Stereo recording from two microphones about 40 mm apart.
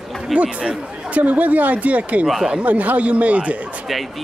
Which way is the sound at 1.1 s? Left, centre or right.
Right.